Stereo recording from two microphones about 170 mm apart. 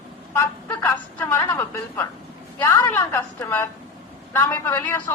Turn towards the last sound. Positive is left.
turn(degrees=10)  # may be behind; listen again after turning